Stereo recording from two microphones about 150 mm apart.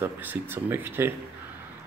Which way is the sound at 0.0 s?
15° right (ahead or behind).